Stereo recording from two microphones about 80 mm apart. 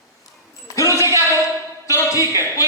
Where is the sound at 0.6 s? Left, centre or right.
Left.